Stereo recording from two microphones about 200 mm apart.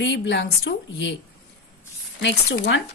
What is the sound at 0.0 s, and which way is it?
Speech, 60° left (ahead or behind).